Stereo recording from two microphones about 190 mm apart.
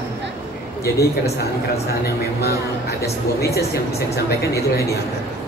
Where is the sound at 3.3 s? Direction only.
55° left (ahead or behind).